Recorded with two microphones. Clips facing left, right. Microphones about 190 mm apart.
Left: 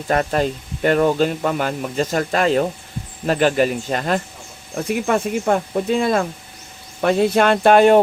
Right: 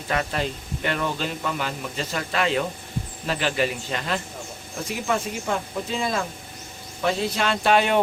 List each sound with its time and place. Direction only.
0.1 s speech: 45° left (ahead or behind)